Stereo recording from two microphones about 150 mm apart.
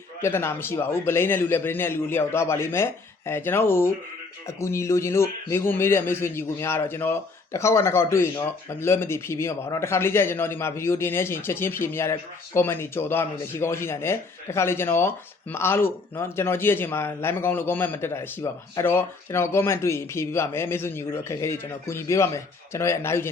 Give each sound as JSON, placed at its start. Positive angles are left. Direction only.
{"t": 0.2, "sound": "speech", "side_deg": 15}